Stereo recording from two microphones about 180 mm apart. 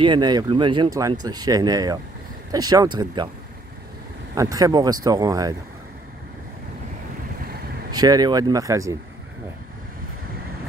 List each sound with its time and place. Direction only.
0.0 s speech: 25° right (ahead or behind)
4.4 s speech: 20° right (ahead or behind)
7.9 s speech: 20° right (ahead or behind)